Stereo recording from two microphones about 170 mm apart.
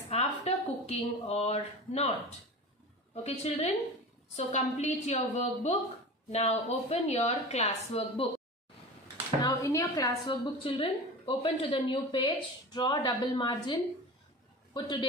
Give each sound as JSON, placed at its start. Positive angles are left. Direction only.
{"t": 0.1, "sound": "a sound", "side_deg": 40}
{"t": 3.3, "sound": "speech", "side_deg": 40}
{"t": 9.5, "sound": "a woman's voice", "side_deg": 15}
{"t": 10.3, "sound": "a woman's voice", "side_deg": 35}